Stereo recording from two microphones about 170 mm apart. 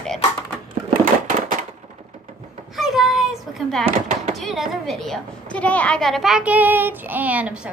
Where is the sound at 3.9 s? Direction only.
50° right (ahead or behind).